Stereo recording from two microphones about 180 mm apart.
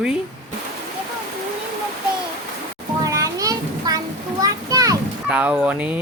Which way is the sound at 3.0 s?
20° right (ahead or behind).